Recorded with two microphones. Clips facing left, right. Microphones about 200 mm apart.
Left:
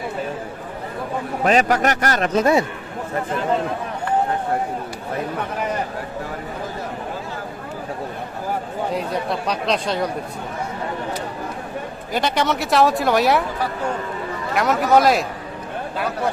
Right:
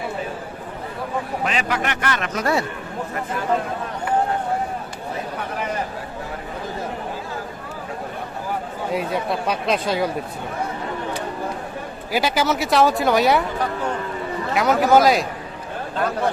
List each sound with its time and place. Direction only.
1.5 s a man's voice: 40° left (ahead or behind)
2.3 s a man's voice: 20° left (ahead or behind)
8.9 s speech: centre (ahead or behind)
12.1 s speech: 5° right (ahead or behind)
14.5 s speech: centre (ahead or behind)